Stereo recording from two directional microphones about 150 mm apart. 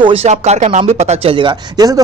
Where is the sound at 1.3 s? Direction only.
30° right (ahead or behind).